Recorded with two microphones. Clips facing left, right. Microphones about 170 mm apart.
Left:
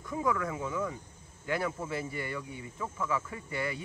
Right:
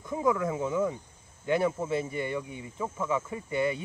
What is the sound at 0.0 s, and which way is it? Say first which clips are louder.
Speech: right 4 dB; 20° right (ahead or behind).